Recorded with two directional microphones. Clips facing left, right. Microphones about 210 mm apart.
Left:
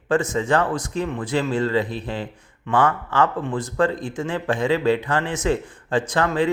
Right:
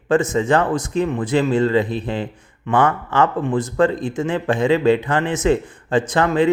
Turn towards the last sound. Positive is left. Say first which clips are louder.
# right 4 dB
turn(degrees=-20)  # may be behind; listen again after turning